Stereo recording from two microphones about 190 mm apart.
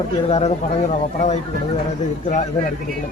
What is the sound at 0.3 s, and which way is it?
Speech, 35° left (ahead or behind).